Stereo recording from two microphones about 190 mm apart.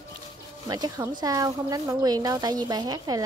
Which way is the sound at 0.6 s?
20° right (ahead or behind).